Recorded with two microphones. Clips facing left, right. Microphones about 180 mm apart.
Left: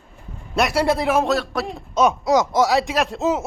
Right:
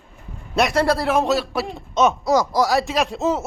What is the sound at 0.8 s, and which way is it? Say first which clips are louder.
Speech: left 1 dB; 15° left (ahead or behind).